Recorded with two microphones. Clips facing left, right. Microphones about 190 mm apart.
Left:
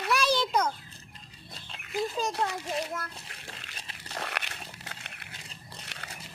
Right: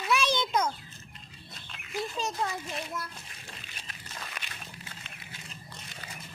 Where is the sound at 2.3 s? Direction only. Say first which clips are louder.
Left 3 dB; 75° left (ahead or behind).